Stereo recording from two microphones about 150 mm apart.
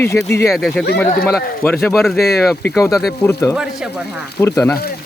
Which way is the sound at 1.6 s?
15° left (ahead or behind).